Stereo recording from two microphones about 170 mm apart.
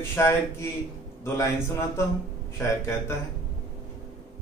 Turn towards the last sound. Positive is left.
turn(degrees=15)  # may be behind; listen again after turning